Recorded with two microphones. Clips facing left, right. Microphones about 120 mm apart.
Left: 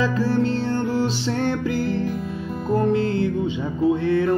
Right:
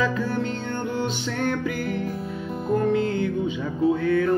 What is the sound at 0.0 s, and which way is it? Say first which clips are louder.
Music: left 4 dB; 35° left (ahead or behind).